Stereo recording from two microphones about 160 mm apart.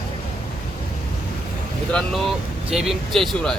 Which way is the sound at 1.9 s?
Centre (ahead or behind).